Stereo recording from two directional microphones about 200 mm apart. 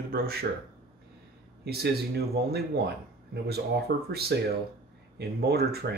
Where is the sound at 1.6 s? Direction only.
55° right (ahead or behind).